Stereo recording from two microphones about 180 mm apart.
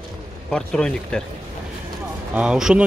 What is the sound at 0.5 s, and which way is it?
Speech, 5° left (ahead or behind).